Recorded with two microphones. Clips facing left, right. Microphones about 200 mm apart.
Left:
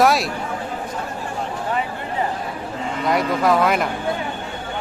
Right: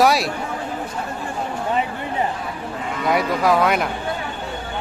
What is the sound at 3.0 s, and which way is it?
Speech, centre (ahead or behind).